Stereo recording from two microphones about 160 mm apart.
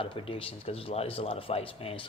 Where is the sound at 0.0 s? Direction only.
35° left (ahead or behind).